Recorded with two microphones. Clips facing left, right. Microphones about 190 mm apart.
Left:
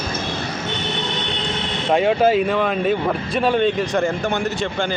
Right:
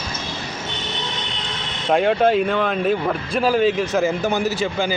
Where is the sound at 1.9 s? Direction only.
Centre (ahead or behind).